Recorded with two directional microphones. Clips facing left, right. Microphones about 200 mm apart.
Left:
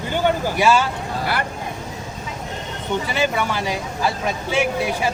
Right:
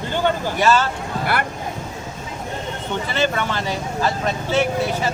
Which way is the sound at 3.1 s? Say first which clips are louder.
Right 2 dB; 10° left (ahead or behind).